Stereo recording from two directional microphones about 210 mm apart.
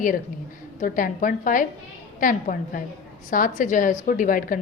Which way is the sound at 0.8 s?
40° left (ahead or behind).